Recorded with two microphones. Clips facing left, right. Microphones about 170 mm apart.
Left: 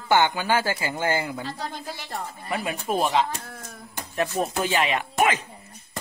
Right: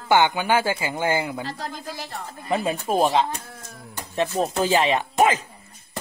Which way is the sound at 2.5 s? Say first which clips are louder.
Right 4 dB; 25° right (ahead or behind).